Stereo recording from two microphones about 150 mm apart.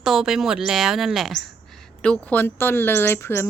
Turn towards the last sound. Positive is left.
turn(degrees=15)  # may be behind; listen again after turning